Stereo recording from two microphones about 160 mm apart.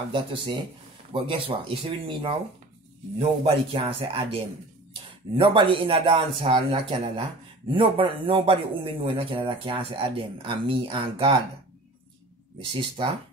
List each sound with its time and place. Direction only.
0.1 s a man's voice: 30° right (ahead or behind)
12.5 s a man's voice: 30° right (ahead or behind)